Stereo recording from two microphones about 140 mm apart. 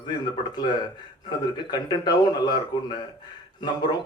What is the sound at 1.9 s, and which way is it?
Speech, 30° left (ahead or behind).